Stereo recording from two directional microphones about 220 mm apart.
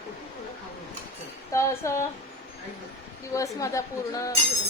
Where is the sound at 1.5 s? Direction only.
15° left (ahead or behind).